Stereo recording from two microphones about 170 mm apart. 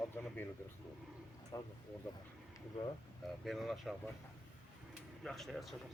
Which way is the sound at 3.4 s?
Centre (ahead or behind).